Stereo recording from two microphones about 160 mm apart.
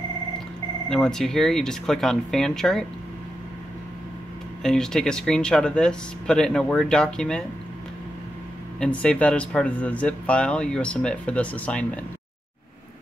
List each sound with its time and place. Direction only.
0.8 s speech: 5° left (ahead or behind)
4.6 s speech: 5° left (ahead or behind)
8.7 s speech: 5° left (ahead or behind)